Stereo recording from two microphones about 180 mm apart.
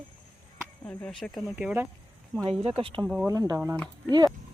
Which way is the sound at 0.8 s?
5° left (ahead or behind).